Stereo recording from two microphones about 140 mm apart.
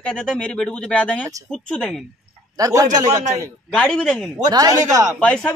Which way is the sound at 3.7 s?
5° left (ahead or behind).